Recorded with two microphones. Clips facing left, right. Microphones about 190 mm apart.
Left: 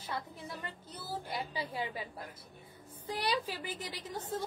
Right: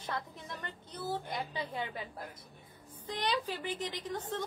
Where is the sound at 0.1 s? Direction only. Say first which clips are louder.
Even; 10° left (ahead or behind).